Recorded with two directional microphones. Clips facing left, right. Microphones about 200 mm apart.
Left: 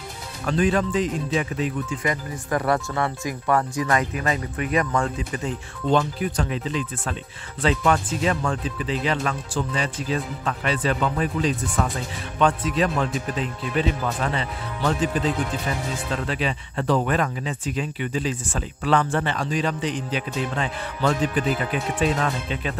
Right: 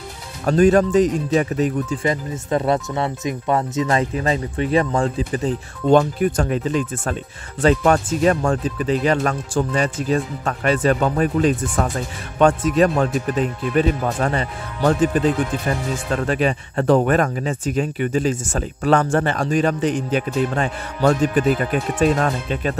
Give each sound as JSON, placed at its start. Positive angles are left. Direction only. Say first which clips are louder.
{"t": 0.5, "sound": "speech", "louder": "right 7 dB", "side_deg": -45}
{"t": 2.0, "sound": "speech", "louder": "right 5 dB", "side_deg": -25}
{"t": 5.9, "sound": "speech", "louder": "right 7 dB", "side_deg": -50}